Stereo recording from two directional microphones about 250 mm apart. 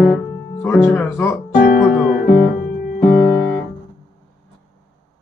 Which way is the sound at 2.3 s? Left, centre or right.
Left.